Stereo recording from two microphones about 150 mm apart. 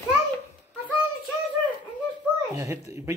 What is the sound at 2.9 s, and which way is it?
Speech, 20° right (ahead or behind).